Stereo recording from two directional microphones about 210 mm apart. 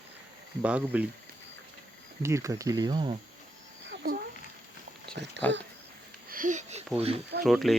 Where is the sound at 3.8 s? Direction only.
50° right (ahead or behind).